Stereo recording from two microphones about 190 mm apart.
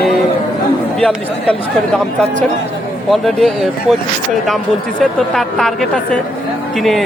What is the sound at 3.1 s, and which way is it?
Speech, centre (ahead or behind).